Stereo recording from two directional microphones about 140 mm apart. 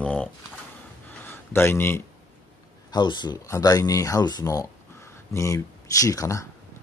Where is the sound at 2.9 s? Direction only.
30° left (ahead or behind).